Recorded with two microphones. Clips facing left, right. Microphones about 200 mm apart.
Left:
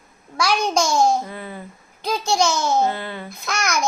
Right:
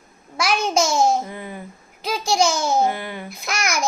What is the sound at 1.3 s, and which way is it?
A child's voice, 15° right (ahead or behind).